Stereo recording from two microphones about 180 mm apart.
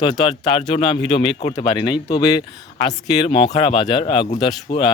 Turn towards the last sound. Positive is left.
turn(degrees=30)  # may be behind; listen again after turning